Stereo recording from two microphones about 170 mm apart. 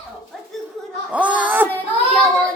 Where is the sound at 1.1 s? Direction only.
10° right (ahead or behind).